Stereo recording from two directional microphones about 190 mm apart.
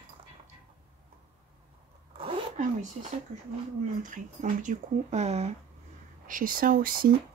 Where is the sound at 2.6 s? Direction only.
40° right (ahead or behind).